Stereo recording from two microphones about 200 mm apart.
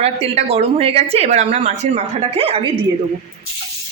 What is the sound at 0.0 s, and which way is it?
A woman's voice, 30° right (ahead or behind).